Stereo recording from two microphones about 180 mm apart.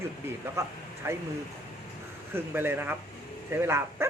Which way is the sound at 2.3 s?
10° right (ahead or behind).